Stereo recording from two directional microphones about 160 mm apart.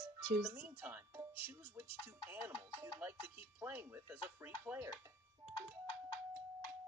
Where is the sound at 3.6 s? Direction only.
10° right (ahead or behind).